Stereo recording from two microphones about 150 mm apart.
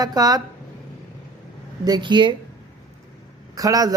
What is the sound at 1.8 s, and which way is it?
Speech, 30° right (ahead or behind).